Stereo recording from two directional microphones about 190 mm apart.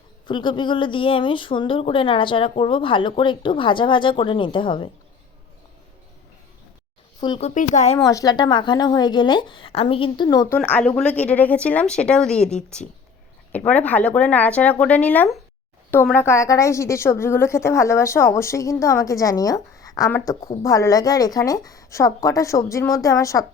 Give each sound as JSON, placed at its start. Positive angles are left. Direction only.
{"t": 0.3, "sound": "speech", "side_deg": 25}
{"t": 7.2, "sound": "speech", "side_deg": 25}
{"t": 7.4, "sound": "speech", "side_deg": 40}
{"t": 7.9, "sound": "speech", "side_deg": 15}
{"t": 10.6, "sound": "a woman's voice", "side_deg": 5}